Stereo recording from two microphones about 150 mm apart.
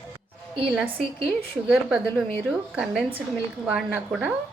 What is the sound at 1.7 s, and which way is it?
A woman's voice, 5° right (ahead or behind).